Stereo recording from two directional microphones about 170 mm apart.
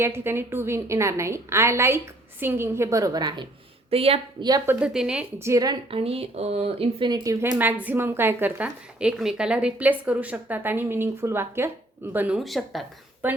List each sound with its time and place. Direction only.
0.0 s a woman's voice: 15° right (ahead or behind)
3.8 s speech: 35° right (ahead or behind)
4.6 s a woman's voice: 10° right (ahead or behind)
5.4 s a woman's voice: 20° right (ahead or behind)
5.9 s speech: 35° right (ahead or behind)
7.6 s a woman's voice: 10° right (ahead or behind)
13.2 s a woman's voice: 10° right (ahead or behind)